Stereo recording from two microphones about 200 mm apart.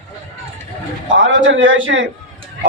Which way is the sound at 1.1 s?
75° right (ahead or behind).